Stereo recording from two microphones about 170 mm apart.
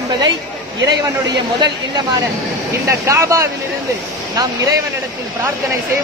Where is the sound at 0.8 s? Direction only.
25° right (ahead or behind).